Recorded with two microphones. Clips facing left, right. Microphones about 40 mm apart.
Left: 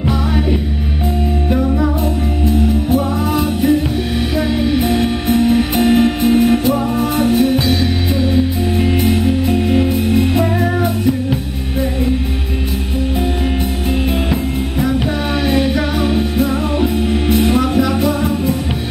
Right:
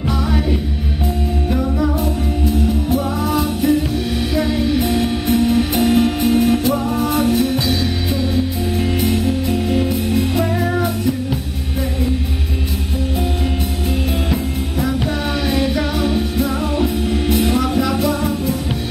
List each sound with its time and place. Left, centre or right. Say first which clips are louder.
1.5 s music: left 3 dB; centre
2.9 s music: left 3 dB; centre
14.3 s music: left 3 dB; centre